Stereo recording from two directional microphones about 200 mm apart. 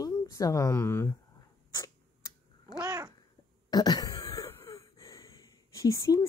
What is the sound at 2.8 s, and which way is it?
Babbling, 20° right (ahead or behind).